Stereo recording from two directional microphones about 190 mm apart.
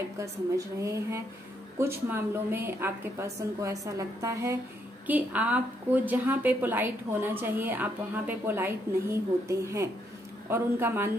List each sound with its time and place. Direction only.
0.2 s a woman's voice: 15° right (ahead or behind)